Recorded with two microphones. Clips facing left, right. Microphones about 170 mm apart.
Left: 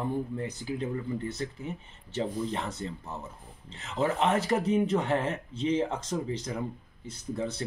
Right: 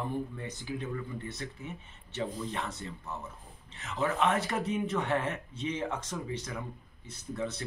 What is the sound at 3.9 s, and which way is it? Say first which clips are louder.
Speech: left 2 dB; 30° left (ahead or behind).